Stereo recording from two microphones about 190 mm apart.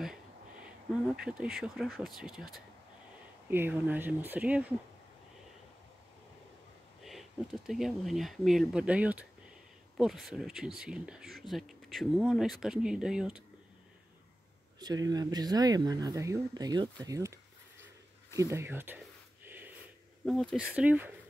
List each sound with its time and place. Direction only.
1.0 s speech: 5° right (ahead or behind)
7.0 s speech: centre (ahead or behind)
14.8 s speech: 20° right (ahead or behind)
19.4 s snort: 10° right (ahead or behind)
20.2 s speech: centre (ahead or behind)